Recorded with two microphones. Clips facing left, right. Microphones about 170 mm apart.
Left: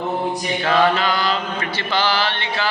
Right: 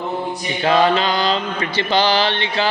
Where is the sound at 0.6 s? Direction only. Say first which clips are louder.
Right 2 dB; 15° right (ahead or behind).